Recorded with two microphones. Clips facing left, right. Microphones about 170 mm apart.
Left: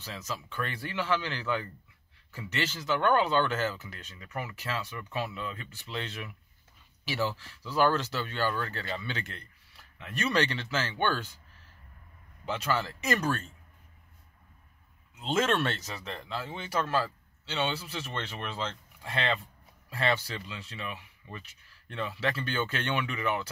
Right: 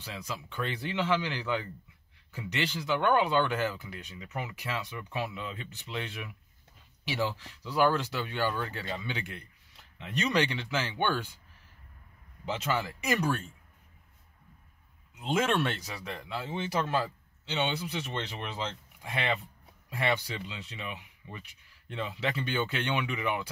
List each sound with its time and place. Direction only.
0.0 s speech: 15° right (ahead or behind)
12.4 s speech: 20° right (ahead or behind)
15.1 s speech: 15° right (ahead or behind)